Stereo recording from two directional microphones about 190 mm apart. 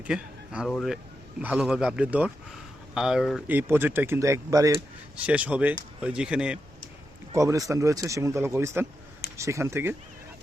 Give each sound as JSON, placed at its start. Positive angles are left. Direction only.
{"t": 0.0, "sound": "speech", "side_deg": -5}
{"t": 7.3, "sound": "speech", "side_deg": -15}